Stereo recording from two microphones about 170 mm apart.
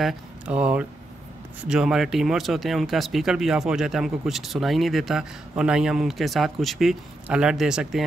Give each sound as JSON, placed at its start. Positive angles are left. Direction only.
{"t": 0.0, "sound": "speech", "side_deg": -5}